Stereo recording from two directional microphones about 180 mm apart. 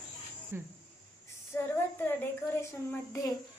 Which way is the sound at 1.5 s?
15° left (ahead or behind).